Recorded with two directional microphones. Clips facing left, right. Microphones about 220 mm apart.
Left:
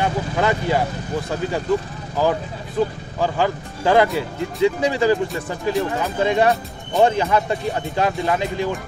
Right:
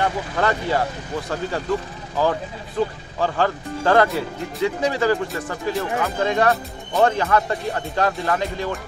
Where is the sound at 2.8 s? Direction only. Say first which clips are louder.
Left 2 dB; 10° left (ahead or behind).